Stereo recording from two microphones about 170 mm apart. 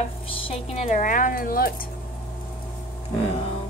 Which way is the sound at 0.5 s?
40° left (ahead or behind).